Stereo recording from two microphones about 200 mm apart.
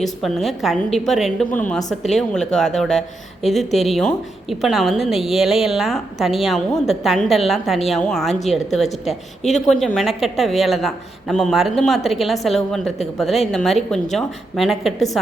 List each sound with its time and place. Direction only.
0.0 s a woman's voice: centre (ahead or behind)